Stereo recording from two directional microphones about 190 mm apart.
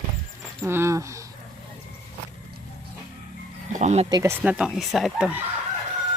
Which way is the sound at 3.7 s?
40° right (ahead or behind).